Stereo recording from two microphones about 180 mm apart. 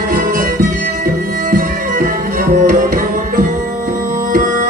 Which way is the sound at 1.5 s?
55° right (ahead or behind).